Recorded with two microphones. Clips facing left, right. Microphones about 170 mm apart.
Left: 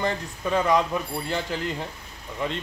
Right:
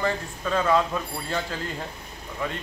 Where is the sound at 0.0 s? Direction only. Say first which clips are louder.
Even; 20° left (ahead or behind).